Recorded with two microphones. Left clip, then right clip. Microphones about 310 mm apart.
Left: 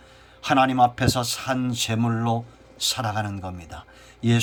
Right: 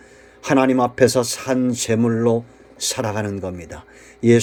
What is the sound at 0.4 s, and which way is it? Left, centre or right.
A man's voice, centre.